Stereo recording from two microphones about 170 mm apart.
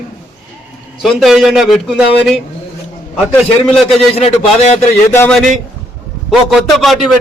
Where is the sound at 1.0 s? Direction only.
Centre (ahead or behind).